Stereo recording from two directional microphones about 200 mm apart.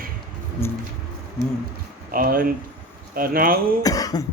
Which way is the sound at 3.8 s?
20° left (ahead or behind).